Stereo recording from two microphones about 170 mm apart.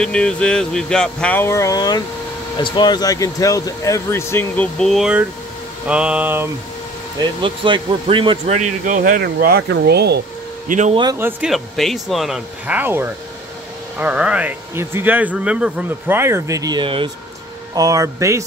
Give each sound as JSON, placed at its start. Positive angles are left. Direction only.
{"t": 0.0, "sound": "speech", "side_deg": 5}
{"t": 4.7, "sound": "speech", "side_deg": 0}
{"t": 7.2, "sound": "speech", "side_deg": -30}
{"t": 8.5, "sound": "speech", "side_deg": -45}
{"t": 10.7, "sound": "a man's voice", "side_deg": -45}
{"t": 11.1, "sound": "speech", "side_deg": -10}
{"t": 11.5, "sound": "speech", "side_deg": 0}